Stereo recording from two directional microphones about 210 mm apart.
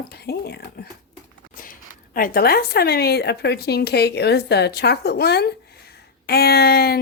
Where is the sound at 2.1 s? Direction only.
45° left (ahead or behind).